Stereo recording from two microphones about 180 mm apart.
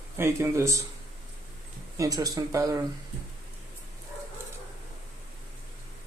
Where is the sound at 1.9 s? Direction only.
20° right (ahead or behind).